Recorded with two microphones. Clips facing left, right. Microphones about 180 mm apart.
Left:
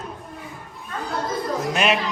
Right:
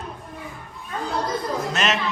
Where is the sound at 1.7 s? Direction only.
10° left (ahead or behind).